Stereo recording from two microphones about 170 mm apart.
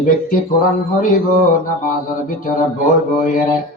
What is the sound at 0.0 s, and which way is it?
Speech, 55° left (ahead or behind).